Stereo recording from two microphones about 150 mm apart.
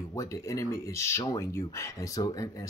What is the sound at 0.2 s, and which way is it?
Speech, 20° left (ahead or behind).